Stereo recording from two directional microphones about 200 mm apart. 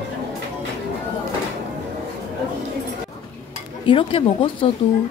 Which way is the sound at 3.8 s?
25° left (ahead or behind).